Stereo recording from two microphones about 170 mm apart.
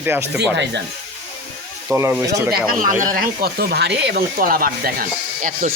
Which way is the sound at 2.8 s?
50° right (ahead or behind).